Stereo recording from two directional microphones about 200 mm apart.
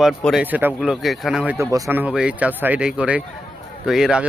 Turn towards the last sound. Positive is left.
turn(degrees=-5)  # may be behind; listen again after turning